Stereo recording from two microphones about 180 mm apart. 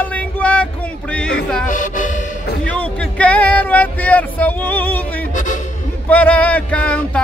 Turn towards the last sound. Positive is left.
turn(degrees=10)  # may be behind; listen again after turning